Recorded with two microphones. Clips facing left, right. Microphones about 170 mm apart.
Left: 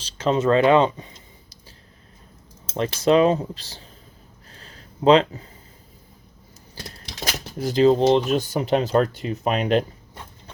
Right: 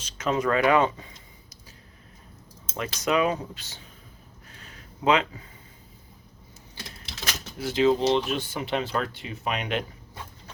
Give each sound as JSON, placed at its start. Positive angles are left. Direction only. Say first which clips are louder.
{"t": 0.0, "sound": "speech", "louder": "left 5 dB", "side_deg": 30}
{"t": 2.7, "sound": "speech", "louder": "left 7 dB", "side_deg": 30}
{"t": 4.4, "sound": "a sound", "louder": "left 2 dB", "side_deg": 35}
{"t": 6.7, "sound": "speech", "louder": "left 5 dB", "side_deg": 40}